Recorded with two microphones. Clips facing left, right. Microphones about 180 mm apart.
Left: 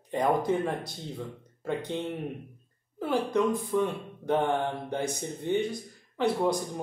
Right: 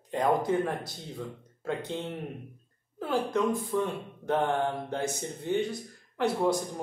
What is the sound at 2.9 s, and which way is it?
Speech, 15° left (ahead or behind).